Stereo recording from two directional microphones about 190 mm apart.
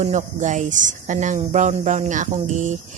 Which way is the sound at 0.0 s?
40° right (ahead or behind).